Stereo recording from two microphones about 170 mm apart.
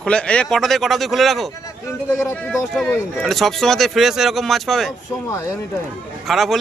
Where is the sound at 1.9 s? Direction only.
15° left (ahead or behind).